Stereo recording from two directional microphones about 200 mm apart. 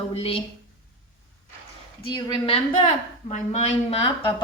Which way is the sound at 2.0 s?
25° left (ahead or behind).